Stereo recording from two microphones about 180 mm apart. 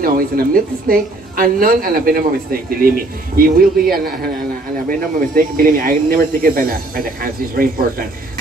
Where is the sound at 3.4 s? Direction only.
55° right (ahead or behind).